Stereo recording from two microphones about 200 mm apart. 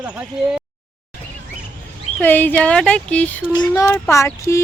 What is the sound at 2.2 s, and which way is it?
Speech, 10° left (ahead or behind).